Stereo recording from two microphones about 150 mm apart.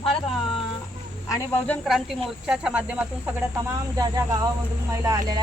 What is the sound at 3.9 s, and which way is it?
Speech, 25° right (ahead or behind).